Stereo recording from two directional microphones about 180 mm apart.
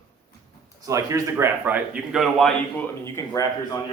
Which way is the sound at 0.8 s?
15° right (ahead or behind).